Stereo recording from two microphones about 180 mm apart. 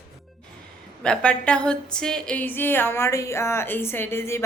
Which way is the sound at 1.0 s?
5° left (ahead or behind).